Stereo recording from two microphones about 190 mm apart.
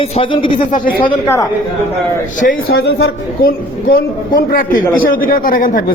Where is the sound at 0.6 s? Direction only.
45° left (ahead or behind).